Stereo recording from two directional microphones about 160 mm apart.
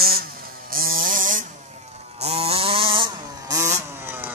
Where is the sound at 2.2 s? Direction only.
40° right (ahead or behind).